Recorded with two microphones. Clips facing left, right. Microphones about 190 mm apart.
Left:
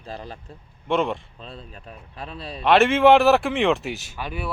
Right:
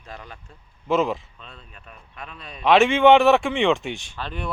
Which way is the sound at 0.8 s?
Centre (ahead or behind).